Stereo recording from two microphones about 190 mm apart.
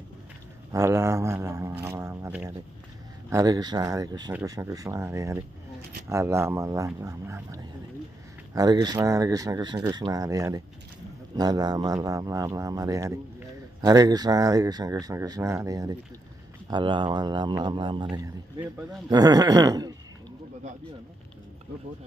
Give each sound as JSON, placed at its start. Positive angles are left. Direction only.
{"t": 0.7, "sound": "a man's voice", "side_deg": -15}
{"t": 19.0, "sound": "speech", "side_deg": -20}